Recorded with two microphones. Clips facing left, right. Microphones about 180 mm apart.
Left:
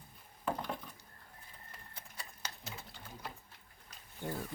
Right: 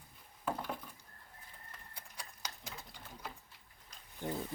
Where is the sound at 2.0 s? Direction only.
10° right (ahead or behind).